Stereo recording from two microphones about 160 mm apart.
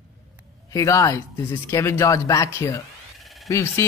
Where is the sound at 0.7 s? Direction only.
20° left (ahead or behind).